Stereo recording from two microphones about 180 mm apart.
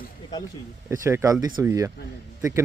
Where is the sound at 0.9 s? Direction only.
15° right (ahead or behind).